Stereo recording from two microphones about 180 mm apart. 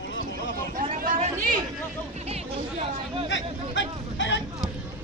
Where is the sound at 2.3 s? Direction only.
35° right (ahead or behind).